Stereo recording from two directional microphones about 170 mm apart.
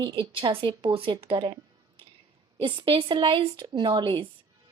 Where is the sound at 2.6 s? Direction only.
30° right (ahead or behind).